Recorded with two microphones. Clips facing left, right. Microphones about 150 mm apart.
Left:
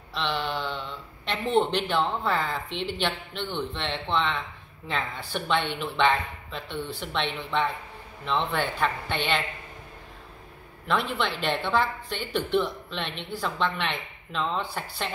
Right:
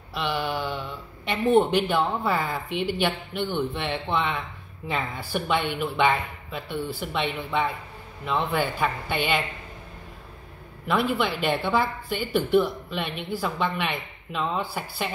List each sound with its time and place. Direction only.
0.1 s speech: 10° right (ahead or behind)
10.9 s speech: 10° right (ahead or behind)